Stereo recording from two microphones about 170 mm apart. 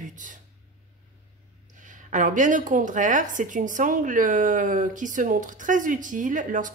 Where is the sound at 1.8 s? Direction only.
50° right (ahead or behind).